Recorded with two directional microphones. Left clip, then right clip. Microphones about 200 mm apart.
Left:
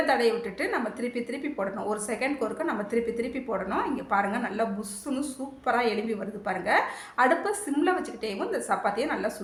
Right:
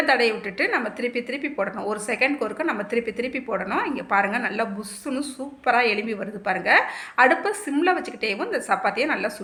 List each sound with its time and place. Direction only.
0.0 s a woman's voice: 25° right (ahead or behind)